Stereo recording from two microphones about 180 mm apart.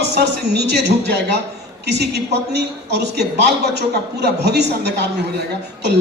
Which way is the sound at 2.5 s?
70° right (ahead or behind).